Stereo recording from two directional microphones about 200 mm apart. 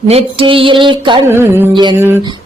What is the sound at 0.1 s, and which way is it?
Music, 30° right (ahead or behind).